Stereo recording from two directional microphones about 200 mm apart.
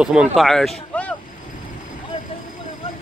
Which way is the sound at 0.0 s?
5° right (ahead or behind).